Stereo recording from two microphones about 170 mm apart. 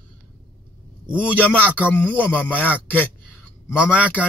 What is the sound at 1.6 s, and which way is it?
Speech, 10° right (ahead or behind).